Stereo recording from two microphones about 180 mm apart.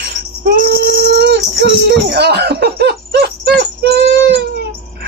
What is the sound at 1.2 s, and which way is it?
Child singing, 70° right (ahead or behind).